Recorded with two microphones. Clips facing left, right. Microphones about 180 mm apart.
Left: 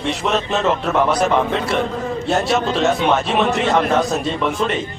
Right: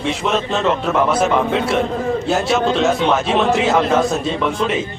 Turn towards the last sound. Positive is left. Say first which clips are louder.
# right 1 dB
turn(degrees=0)  # may be behind; listen again after turning